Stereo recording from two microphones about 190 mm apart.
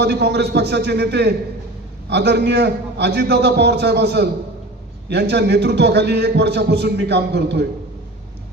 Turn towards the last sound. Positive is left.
turn(degrees=-60)  # may be behind; listen again after turning